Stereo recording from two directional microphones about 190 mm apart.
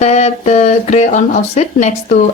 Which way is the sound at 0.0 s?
35° left (ahead or behind).